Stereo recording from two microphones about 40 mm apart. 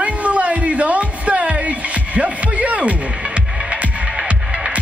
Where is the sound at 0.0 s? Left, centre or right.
Right.